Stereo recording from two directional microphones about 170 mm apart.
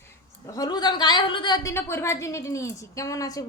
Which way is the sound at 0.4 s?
20° left (ahead or behind).